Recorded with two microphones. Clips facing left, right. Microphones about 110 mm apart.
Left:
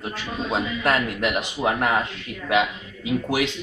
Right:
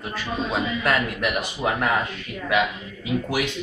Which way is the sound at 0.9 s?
25° left (ahead or behind).